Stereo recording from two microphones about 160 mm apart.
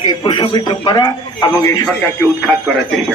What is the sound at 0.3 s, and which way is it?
A man's voice, 30° left (ahead or behind).